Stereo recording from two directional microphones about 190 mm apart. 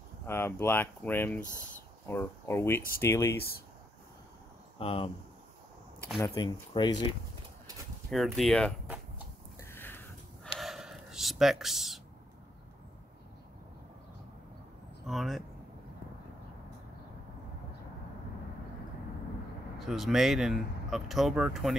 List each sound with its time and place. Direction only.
0.3 s speech: 10° left (ahead or behind)
3.3 s speech: 55° left (ahead or behind)
4.7 s speech: 30° left (ahead or behind)
6.1 s speech: 20° left (ahead or behind)
8.1 s speech: centre (ahead or behind)
9.6 s a sound: 10° left (ahead or behind)
10.6 s a sound: centre (ahead or behind)
15.0 s speech: centre (ahead or behind)
19.8 s speech: centre (ahead or behind)